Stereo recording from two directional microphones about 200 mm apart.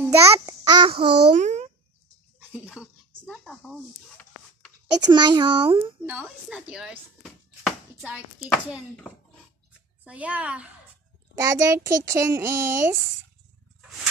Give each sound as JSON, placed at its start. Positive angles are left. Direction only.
{"t": 0.1, "sound": "a child's voice", "side_deg": -15}
{"t": 1.3, "sound": "a child's voice", "side_deg": -35}
{"t": 2.5, "sound": "a sound", "side_deg": -5}
{"t": 5.0, "sound": "speech", "side_deg": -20}
{"t": 6.0, "sound": "speech", "side_deg": -5}
{"t": 10.0, "sound": "a child's voice", "side_deg": -5}